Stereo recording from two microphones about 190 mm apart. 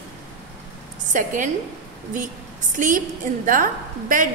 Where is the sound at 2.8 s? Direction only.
45° right (ahead or behind).